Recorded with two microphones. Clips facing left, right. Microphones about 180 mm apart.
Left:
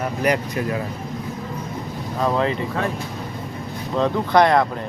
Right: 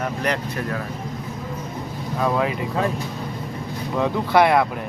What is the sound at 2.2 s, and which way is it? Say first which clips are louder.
Speech: left 1 dB; 5° right (ahead or behind).